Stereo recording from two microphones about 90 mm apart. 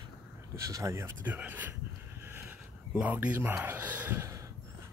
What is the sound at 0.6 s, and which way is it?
Speech, 35° right (ahead or behind).